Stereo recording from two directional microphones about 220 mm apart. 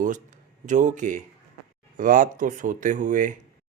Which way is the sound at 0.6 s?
35° right (ahead or behind).